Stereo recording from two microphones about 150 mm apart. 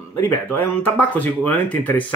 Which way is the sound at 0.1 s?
15° left (ahead or behind).